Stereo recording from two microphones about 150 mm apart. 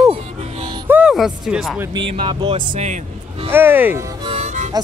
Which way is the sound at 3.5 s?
15° right (ahead or behind).